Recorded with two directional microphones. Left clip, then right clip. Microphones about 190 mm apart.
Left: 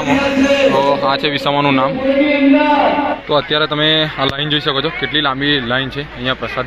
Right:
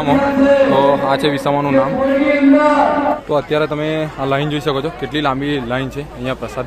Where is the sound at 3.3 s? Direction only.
10° right (ahead or behind).